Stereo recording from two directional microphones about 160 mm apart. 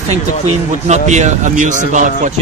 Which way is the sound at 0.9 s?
45° right (ahead or behind).